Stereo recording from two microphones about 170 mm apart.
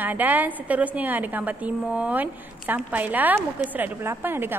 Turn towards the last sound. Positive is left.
turn(degrees=-10)  # may be behind; listen again after turning